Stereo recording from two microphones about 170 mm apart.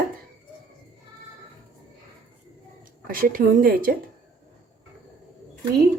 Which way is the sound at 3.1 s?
55° right (ahead or behind).